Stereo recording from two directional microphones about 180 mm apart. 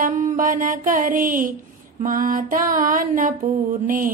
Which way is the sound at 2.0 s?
50° right (ahead or behind).